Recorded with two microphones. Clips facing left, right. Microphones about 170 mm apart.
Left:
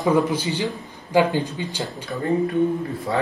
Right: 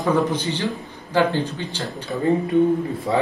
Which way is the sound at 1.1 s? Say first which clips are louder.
Left 1 dB; 10° left (ahead or behind).